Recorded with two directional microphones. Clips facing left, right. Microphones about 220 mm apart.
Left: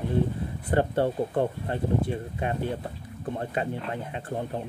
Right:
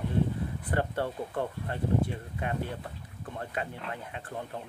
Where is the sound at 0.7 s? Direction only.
25° left (ahead or behind).